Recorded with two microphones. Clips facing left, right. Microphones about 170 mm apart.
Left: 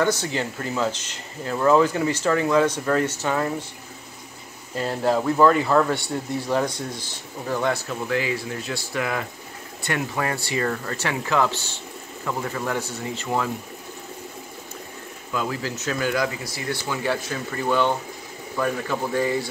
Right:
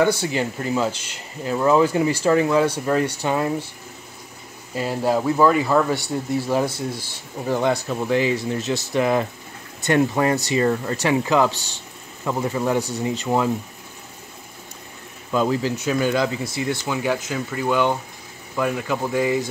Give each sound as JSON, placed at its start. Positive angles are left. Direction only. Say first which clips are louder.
{"t": 0.0, "sound": "speech", "louder": "right 3 dB", "side_deg": -10}
{"t": 4.7, "sound": "speech", "louder": "right 1 dB", "side_deg": -10}
{"t": 7.5, "sound": "speech", "louder": "right 3 dB", "side_deg": -20}
{"t": 15.3, "sound": "speech", "louder": "right 7 dB", "side_deg": -25}
{"t": 15.7, "sound": "speech", "louder": "right 4 dB", "side_deg": -15}